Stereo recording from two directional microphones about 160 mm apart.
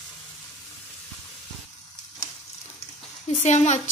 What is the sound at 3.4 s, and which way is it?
Speech, 45° left (ahead or behind).